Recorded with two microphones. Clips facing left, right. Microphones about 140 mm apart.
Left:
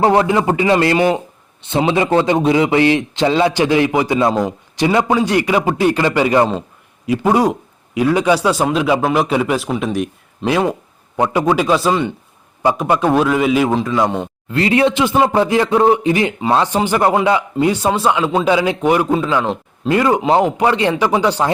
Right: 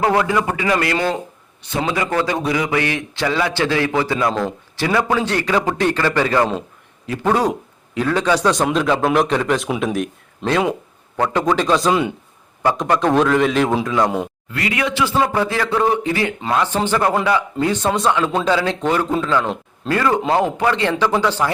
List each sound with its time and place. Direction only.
0.0 s a man's voice: 25° left (ahead or behind); by 9.6 s 10° left (ahead or behind)
9.6 s speech: centre (ahead or behind)
11.3 s a man's voice: 10° left (ahead or behind)
12.6 s a man's voice: 10° left (ahead or behind)
14.5 s a man's voice: 30° left (ahead or behind); by 21.5 s 15° left (ahead or behind)